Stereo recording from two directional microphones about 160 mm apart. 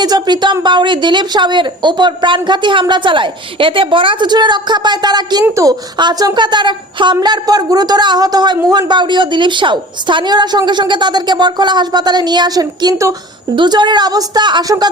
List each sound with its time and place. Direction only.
0.0 s a woman's voice: 25° right (ahead or behind)